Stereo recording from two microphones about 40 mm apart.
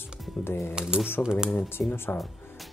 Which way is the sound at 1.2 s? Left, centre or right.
Left.